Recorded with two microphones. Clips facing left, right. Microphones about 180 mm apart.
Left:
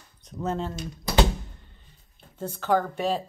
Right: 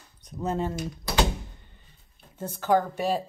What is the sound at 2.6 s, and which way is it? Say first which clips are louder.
Speech: right 1 dB; 10° right (ahead or behind).